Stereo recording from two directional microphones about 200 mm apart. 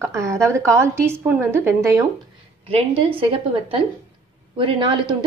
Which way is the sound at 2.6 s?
30° right (ahead or behind).